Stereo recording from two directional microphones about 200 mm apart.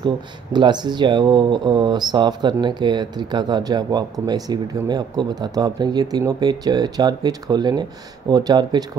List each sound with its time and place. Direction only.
0.0 s speech: 20° right (ahead or behind)